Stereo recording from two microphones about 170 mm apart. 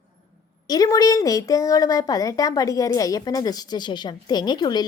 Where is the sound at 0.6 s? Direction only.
20° left (ahead or behind).